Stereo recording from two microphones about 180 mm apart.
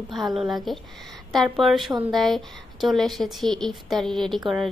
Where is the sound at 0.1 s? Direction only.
Centre (ahead or behind).